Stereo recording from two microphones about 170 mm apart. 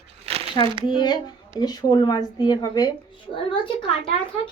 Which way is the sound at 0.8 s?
25° left (ahead or behind).